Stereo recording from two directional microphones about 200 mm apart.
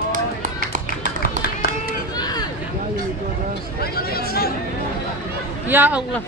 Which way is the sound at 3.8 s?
50° left (ahead or behind).